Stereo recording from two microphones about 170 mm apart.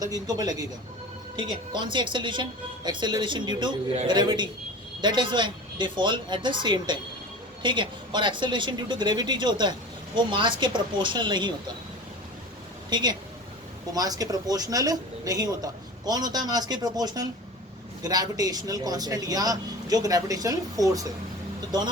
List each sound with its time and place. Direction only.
0.0 s speech: 20° right (ahead or behind)
12.9 s speech: 25° right (ahead or behind)